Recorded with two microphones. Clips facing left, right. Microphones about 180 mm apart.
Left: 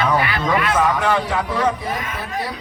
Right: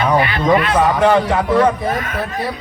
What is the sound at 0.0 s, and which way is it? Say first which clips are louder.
A man's voice: right 4 dB; 25° right (ahead or behind).